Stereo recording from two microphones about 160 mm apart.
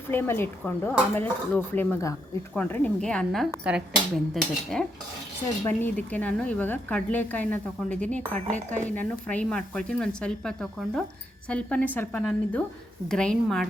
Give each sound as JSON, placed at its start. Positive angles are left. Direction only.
{"t": 0.1, "sound": "a woman's voice", "side_deg": 15}
{"t": 3.6, "sound": "speech", "side_deg": -5}
{"t": 4.4, "sound": "a woman's voice", "side_deg": 5}
{"t": 8.4, "sound": "speech", "side_deg": -50}
{"t": 9.0, "sound": "a woman's voice", "side_deg": 10}